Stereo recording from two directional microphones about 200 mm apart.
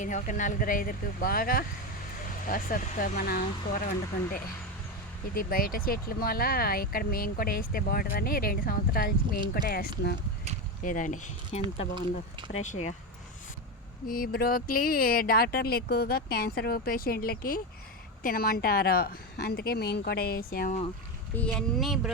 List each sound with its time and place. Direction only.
0.0 s speech: 40° left (ahead or behind)
5.3 s speech: 45° left (ahead or behind)
10.8 s speech: 40° left (ahead or behind)
14.1 s speech: 45° left (ahead or behind)
21.3 s speech: 5° left (ahead or behind)